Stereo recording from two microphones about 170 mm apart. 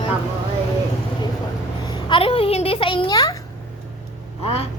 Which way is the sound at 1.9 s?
30° left (ahead or behind).